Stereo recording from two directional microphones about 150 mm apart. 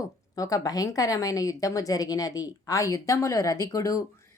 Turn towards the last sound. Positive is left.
turn(degrees=20)  # may be behind; listen again after turning